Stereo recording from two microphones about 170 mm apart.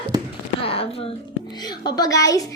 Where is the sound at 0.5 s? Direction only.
35° left (ahead or behind).